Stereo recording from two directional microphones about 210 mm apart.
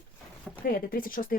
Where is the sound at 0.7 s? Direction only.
40° left (ahead or behind).